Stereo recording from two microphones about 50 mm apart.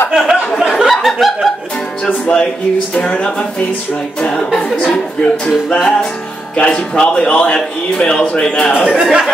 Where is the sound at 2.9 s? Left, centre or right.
Left.